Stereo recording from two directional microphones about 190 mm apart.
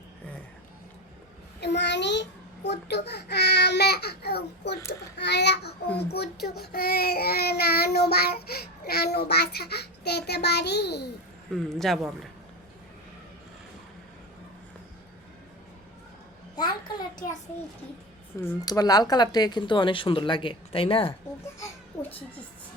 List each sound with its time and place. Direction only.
1.6 s a child's voice: 65° left (ahead or behind)
4.8 s a child's voice: 15° left (ahead or behind)
5.1 s a child's voice: 65° left (ahead or behind)
11.5 s speech: centre (ahead or behind)
18.3 s speech: 15° left (ahead or behind)